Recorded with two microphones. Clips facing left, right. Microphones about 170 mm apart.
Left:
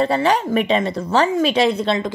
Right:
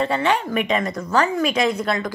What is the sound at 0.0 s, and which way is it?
A woman's voice, 35° left (ahead or behind).